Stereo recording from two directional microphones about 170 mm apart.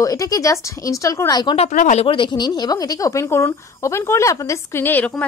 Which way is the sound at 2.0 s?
30° left (ahead or behind).